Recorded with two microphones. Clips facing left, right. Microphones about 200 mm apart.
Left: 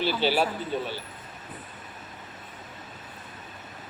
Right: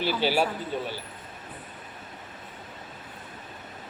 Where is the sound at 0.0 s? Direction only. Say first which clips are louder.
Even; 10° right (ahead or behind).